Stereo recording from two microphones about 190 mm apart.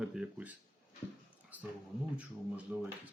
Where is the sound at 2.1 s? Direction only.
5° right (ahead or behind).